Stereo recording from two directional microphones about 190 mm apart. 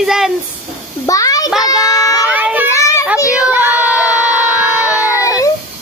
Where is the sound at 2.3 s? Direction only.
10° right (ahead or behind).